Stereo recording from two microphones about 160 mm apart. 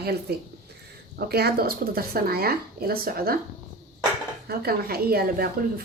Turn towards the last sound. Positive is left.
turn(degrees=-70)  # may be behind; listen again after turning